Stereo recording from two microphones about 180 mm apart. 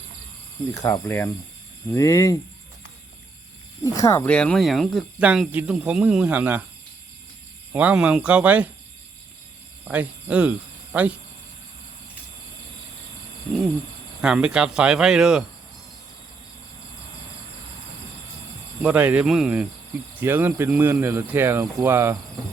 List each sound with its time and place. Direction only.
0.7 s cricket: 20° left (ahead or behind)
3.9 s speech: 15° left (ahead or behind); by 6.6 s 10° right (ahead or behind)
7.7 s speech: 10° right (ahead or behind)
9.9 s speech: 5° right (ahead or behind)
14.2 s speech: 5° right (ahead or behind)
18.8 s speech: 10° right (ahead or behind)